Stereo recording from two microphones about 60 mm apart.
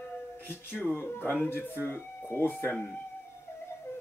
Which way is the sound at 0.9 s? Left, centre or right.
Left.